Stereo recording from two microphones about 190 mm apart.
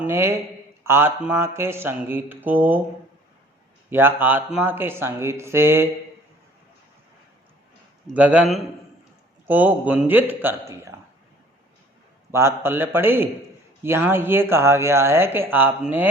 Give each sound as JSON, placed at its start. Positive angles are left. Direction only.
{"t": 0.0, "sound": "speech", "side_deg": -15}
{"t": 3.8, "sound": "speech", "side_deg": -10}
{"t": 8.1, "sound": "a man's voice", "side_deg": -5}
{"t": 12.3, "sound": "speech", "side_deg": -15}